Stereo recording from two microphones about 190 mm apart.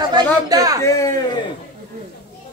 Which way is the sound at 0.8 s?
15° left (ahead or behind).